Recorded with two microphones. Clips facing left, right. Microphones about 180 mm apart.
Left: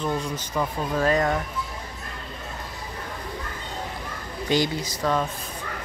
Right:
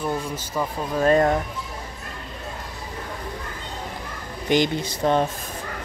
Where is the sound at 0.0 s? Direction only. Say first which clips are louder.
Even; 10° right (ahead or behind).